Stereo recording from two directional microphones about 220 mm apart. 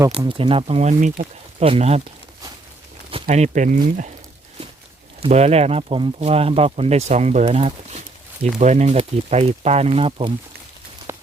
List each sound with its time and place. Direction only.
0.2 s speech: 25° right (ahead or behind)
3.1 s speech: 30° right (ahead or behind)
5.2 s speech: 30° right (ahead or behind)
11.1 s walk: 10° right (ahead or behind)